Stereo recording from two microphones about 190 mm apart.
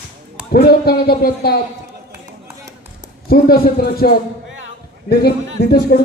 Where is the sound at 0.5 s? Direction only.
55° left (ahead or behind).